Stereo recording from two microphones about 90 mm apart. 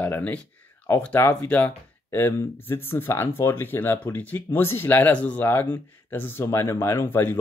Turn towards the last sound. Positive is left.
turn(degrees=25)  # may be behind; listen again after turning